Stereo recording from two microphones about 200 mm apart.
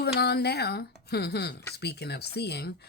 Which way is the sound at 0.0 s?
55° left (ahead or behind).